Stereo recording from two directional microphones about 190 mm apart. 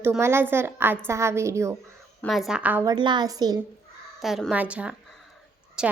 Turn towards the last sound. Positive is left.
turn(degrees=-5)  # may be behind; listen again after turning